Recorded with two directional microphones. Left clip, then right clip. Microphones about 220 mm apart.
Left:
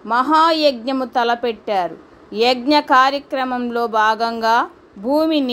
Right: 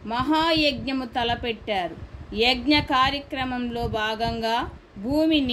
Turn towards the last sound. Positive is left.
turn(degrees=25)  # may be behind; listen again after turning